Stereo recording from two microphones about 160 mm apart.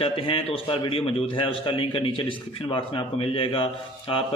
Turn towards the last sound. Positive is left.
turn(degrees=35)  # may be behind; listen again after turning